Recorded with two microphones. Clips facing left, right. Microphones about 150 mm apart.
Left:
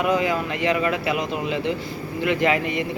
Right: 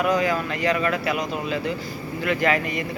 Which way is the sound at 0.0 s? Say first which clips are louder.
Even; 20° left (ahead or behind).